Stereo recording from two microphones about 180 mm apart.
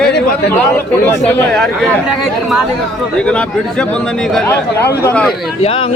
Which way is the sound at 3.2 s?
5° left (ahead or behind).